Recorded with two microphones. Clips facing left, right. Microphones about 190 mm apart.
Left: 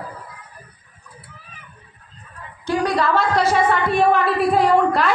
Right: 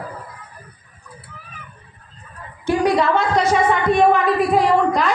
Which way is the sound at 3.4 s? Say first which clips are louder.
Right 1 dB; 20° right (ahead or behind).